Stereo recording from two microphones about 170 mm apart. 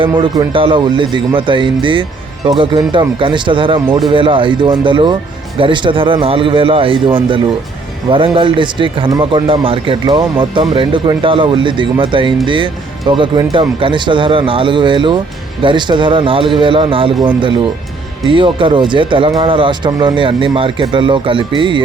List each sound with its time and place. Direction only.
0.2 s a man's voice: 30° right (ahead or behind)